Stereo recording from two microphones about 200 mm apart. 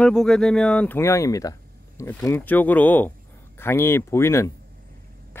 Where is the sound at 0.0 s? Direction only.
Centre (ahead or behind).